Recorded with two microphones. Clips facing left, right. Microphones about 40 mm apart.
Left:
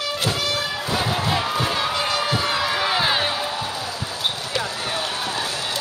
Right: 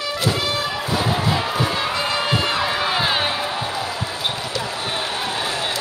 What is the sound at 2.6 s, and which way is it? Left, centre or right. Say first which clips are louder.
Crowd: right 1 dB; centre.